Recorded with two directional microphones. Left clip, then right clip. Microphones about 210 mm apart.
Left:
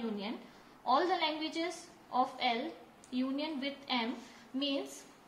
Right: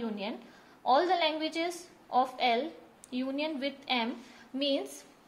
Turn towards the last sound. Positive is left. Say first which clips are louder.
# right 5 dB
turn(degrees=-55)  # may be behind; listen again after turning